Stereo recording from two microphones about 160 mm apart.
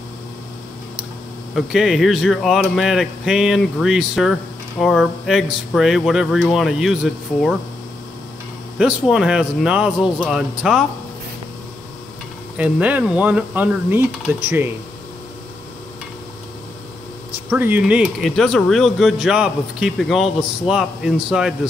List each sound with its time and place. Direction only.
1.5 s speech: centre (ahead or behind)
8.7 s speech: 5° right (ahead or behind)
12.5 s speech: 10° right (ahead or behind)
17.5 s speech: 10° right (ahead or behind)